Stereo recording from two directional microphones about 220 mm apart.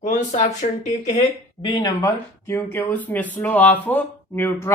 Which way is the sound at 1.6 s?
15° left (ahead or behind).